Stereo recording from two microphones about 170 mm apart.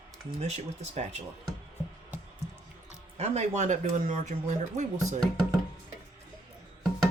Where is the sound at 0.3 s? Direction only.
40° right (ahead or behind).